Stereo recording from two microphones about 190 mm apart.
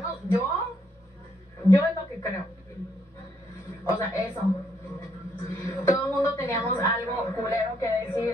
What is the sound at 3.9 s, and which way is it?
Speech, 15° left (ahead or behind).